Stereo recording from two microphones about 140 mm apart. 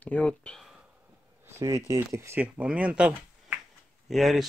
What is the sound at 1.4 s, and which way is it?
Speech, 20° right (ahead or behind).